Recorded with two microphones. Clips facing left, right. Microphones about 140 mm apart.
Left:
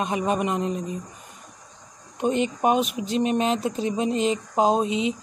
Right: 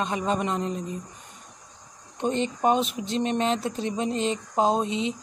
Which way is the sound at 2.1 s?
15° left (ahead or behind).